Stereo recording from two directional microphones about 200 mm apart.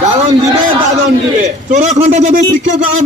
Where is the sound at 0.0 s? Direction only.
35° right (ahead or behind).